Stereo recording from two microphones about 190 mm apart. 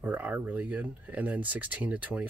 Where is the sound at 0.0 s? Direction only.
10° right (ahead or behind).